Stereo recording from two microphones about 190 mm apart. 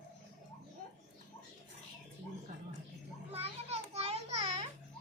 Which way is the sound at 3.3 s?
35° right (ahead or behind).